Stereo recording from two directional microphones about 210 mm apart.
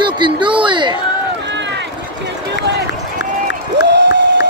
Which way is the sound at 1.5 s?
55° right (ahead or behind).